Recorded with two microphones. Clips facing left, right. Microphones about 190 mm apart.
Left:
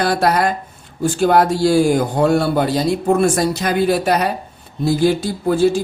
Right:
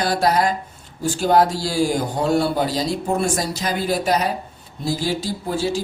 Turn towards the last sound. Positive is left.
turn(degrees=55)  # may be behind; listen again after turning